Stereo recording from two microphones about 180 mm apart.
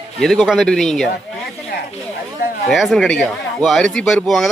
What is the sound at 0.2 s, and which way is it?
Speech, centre (ahead or behind).